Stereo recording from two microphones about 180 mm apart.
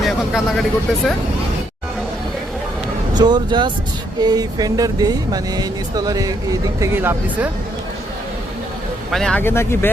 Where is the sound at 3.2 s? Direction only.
25° right (ahead or behind).